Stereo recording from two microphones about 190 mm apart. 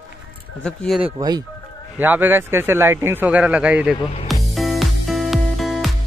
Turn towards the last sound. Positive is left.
turn(degrees=0)  # may be behind; listen again after turning